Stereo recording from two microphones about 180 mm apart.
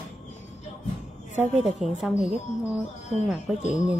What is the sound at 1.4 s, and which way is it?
Speech, centre (ahead or behind).